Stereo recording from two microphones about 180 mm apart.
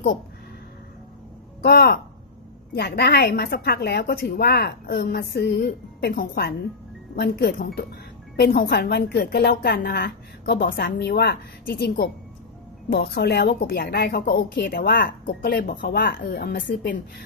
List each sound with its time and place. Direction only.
1.6 s a woman's voice: 65° left (ahead or behind)
16.6 s speech: 80° left